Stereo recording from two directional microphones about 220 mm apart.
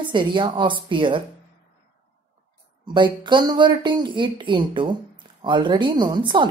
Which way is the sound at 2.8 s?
20° right (ahead or behind).